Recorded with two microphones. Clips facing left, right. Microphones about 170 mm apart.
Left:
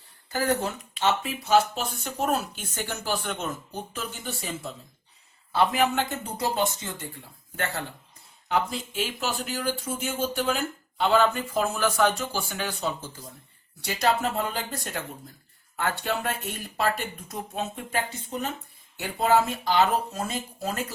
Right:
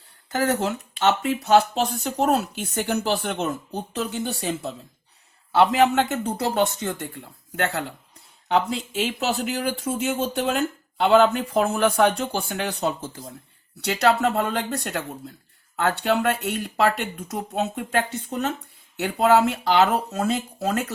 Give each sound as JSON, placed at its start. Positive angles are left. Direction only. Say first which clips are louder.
{"t": 0.3, "sound": "speech", "louder": "right 3 dB", "side_deg": -75}